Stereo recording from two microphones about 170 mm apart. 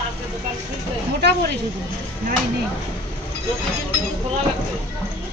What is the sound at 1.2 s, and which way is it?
Speech, 75° right (ahead or behind).